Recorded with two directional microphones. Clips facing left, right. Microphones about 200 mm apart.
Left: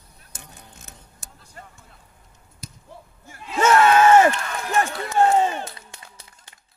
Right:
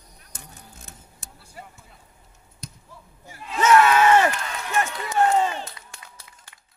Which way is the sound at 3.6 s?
45° left (ahead or behind).